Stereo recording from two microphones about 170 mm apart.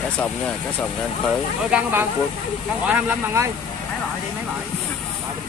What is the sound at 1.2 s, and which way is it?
Speech, 5° right (ahead or behind).